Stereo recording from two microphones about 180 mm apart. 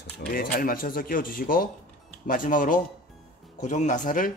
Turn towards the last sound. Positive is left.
turn(degrees=45)  # may be behind; listen again after turning